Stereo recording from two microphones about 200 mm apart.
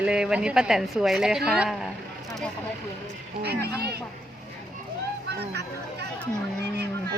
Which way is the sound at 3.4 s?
55° right (ahead or behind).